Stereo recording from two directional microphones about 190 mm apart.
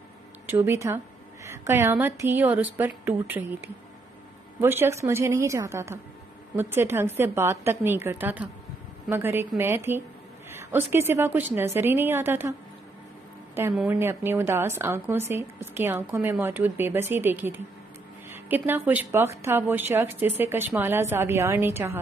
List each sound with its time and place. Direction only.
0.5 s a woman's voice: 15° right (ahead or behind)
4.6 s a woman's voice: 10° right (ahead or behind)
13.8 s a woman's voice: 10° right (ahead or behind)